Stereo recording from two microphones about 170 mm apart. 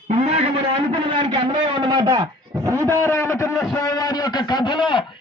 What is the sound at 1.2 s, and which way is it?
A man's voice, 30° right (ahead or behind).